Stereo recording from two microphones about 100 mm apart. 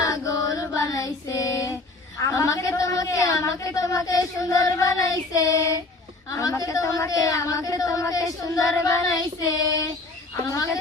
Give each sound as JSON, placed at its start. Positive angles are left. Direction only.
{"t": 0.0, "sound": "child singing", "side_deg": 35}
{"t": 2.2, "sound": "a sound", "side_deg": 35}
{"t": 6.4, "sound": "speech", "side_deg": 35}